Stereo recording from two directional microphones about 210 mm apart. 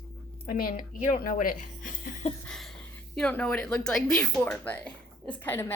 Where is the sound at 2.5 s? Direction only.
Centre (ahead or behind).